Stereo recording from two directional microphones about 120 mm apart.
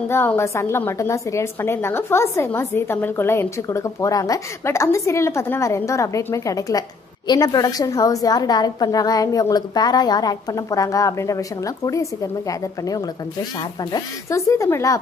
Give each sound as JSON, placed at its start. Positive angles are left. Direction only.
{"t": 0.1, "sound": "a woman's voice", "side_deg": 20}
{"t": 14.3, "sound": "a woman's voice", "side_deg": 25}